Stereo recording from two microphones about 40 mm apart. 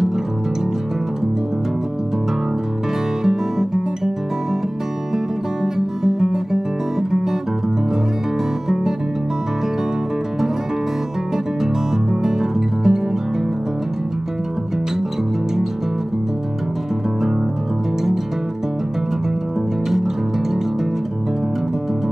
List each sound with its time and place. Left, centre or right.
3.3 s guitar: centre
5.1 s music: centre
11.6 s music: centre